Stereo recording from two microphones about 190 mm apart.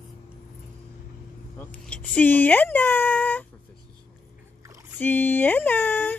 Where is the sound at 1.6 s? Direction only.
10° left (ahead or behind).